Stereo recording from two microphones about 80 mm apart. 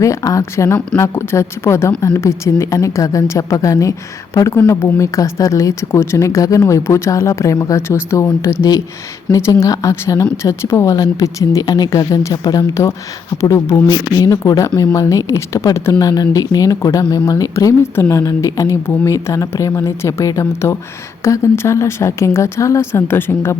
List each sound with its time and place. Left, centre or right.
0.0 s speech: left
4.4 s speech: left
5.9 s speech: left
10.4 s speech: left
10.9 s speech: left
13.4 s speech: left
13.9 s speech: left